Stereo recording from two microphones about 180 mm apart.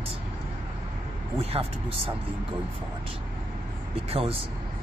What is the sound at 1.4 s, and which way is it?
Speech, 30° right (ahead or behind).